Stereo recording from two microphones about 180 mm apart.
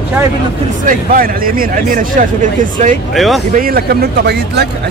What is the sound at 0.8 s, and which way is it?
Speech, 50° right (ahead or behind).